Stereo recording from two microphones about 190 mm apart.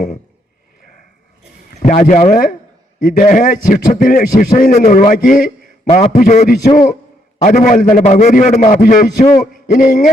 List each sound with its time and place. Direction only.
1.8 s a man's voice: 40° left (ahead or behind)
5.8 s a man's voice: 30° left (ahead or behind)